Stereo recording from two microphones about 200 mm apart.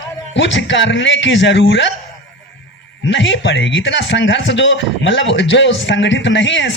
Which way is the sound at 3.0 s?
65° left (ahead or behind).